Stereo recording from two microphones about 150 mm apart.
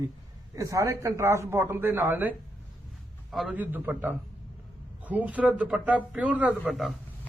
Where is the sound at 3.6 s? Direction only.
15° right (ahead or behind).